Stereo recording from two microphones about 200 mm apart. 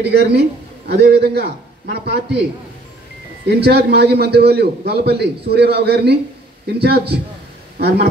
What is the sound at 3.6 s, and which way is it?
A man's voice, 55° right (ahead or behind).